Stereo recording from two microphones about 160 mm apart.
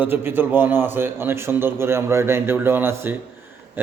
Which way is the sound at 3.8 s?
10° right (ahead or behind).